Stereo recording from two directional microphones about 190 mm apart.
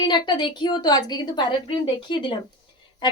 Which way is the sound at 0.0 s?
25° left (ahead or behind).